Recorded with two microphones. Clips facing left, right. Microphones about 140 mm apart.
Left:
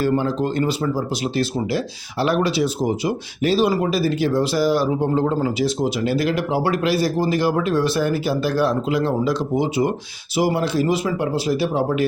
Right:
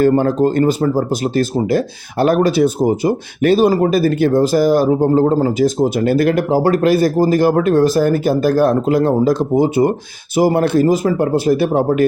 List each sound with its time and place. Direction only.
0.0 s speech: 50° right (ahead or behind)